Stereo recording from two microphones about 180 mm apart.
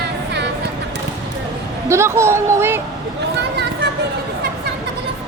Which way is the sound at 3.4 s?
70° right (ahead or behind).